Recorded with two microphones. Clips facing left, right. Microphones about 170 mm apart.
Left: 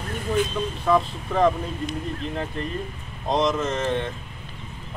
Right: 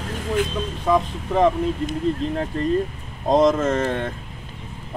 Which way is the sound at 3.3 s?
50° right (ahead or behind).